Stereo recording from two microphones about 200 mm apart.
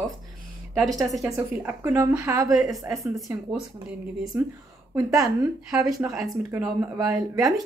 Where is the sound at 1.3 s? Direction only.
10° right (ahead or behind).